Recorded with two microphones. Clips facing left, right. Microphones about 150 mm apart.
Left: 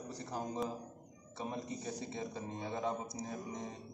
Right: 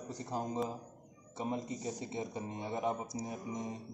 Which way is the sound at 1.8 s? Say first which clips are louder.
Right 2 dB; 20° right (ahead or behind).